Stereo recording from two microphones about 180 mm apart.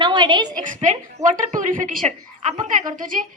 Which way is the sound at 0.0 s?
25° right (ahead or behind).